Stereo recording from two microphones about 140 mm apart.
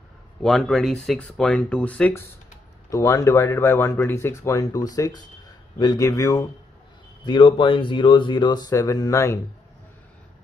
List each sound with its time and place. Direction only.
0.4 s speech: 5° left (ahead or behind)
2.9 s speech: 25° left (ahead or behind)
7.2 s speech: 35° left (ahead or behind)